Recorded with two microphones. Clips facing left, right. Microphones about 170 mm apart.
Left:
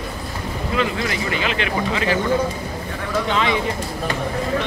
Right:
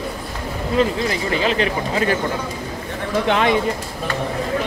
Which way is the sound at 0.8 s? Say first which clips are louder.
Right 4 dB; 35° right (ahead or behind).